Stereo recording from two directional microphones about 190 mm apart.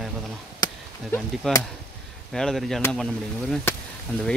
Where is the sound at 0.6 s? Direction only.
20° left (ahead or behind).